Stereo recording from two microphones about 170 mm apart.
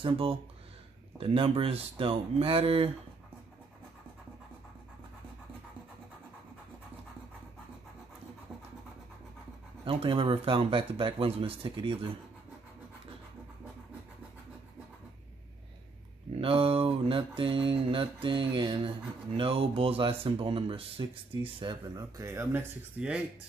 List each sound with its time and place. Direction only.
0.0 s speech: 30° right (ahead or behind)
9.8 s speech: 30° right (ahead or behind)
16.3 s speech: 30° right (ahead or behind); by 23.2 s 5° right (ahead or behind)